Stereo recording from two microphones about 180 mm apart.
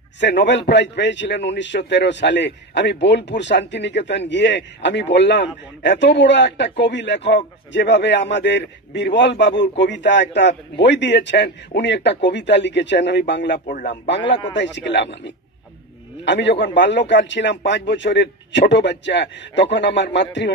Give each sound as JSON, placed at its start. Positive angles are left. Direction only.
{"t": 0.2, "sound": "a man's voice", "side_deg": 75}